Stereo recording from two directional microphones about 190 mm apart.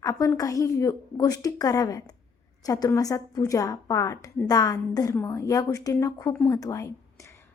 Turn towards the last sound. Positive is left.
turn(degrees=15)  # may be behind; listen again after turning